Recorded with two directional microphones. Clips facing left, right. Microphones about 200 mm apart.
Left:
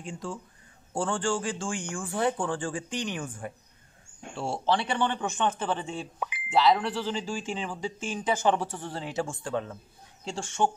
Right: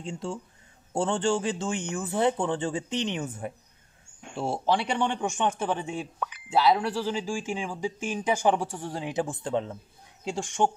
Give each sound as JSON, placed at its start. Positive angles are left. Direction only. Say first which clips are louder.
{"t": 0.0, "sound": "speech", "louder": "right 3 dB", "side_deg": -25}
{"t": 6.1, "sound": "chink", "louder": "even", "side_deg": 10}
{"t": 6.5, "sound": "speech", "louder": "even", "side_deg": -10}